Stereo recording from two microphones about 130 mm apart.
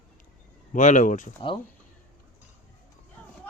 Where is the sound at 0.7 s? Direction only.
70° left (ahead or behind).